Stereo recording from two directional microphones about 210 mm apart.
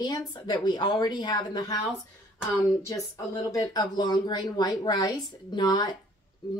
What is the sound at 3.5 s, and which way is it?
A woman's voice, 15° left (ahead or behind).